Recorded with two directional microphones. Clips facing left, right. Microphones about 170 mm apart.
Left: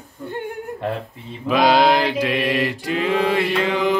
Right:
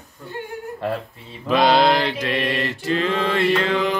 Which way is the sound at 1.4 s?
5° left (ahead or behind).